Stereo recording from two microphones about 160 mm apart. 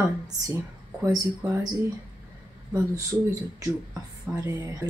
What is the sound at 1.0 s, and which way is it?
Speech, 20° right (ahead or behind).